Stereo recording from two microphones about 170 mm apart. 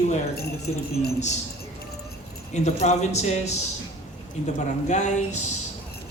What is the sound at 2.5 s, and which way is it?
A man's voice, 40° left (ahead or behind).